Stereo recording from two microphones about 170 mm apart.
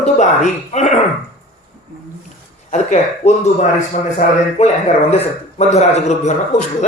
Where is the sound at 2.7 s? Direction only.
40° left (ahead or behind).